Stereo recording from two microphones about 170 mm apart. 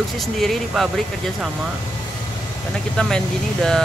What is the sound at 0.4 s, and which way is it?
Speech, centre (ahead or behind).